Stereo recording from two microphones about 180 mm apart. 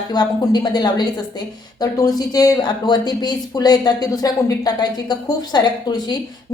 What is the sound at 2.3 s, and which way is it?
Speech, 20° left (ahead or behind).